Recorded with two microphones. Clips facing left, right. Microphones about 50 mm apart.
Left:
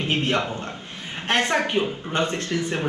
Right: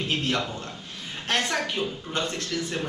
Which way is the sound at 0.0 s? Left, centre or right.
Left.